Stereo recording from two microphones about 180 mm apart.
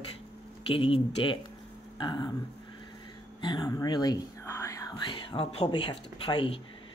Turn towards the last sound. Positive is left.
turn(degrees=30)  # may be behind; listen again after turning